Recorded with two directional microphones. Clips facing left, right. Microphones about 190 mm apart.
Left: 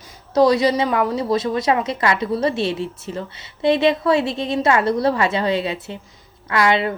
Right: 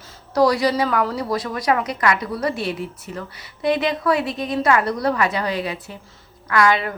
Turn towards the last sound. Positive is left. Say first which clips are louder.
# even
turn(degrees=25)  # may be behind; listen again after turning